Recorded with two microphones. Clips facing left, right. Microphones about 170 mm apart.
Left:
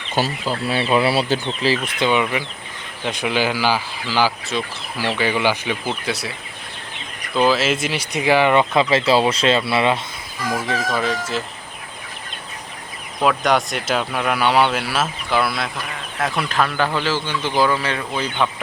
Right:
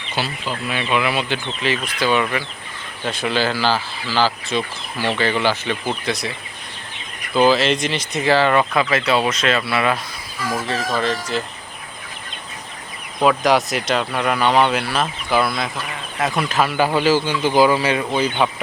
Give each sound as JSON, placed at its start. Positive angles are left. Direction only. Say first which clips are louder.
{"t": 0.1, "sound": "speech", "louder": "left 4 dB", "side_deg": 40}
{"t": 7.3, "sound": "speech", "louder": "right 2 dB", "side_deg": 0}
{"t": 10.5, "sound": "speech", "louder": "even", "side_deg": 15}
{"t": 13.2, "sound": "a man's voice", "louder": "right 2 dB", "side_deg": 0}